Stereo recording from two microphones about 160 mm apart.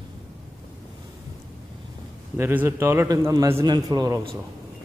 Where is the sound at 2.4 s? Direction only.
15° right (ahead or behind).